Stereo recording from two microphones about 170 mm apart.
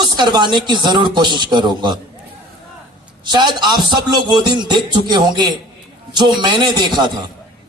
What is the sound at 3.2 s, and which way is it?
Speech, 25° right (ahead or behind).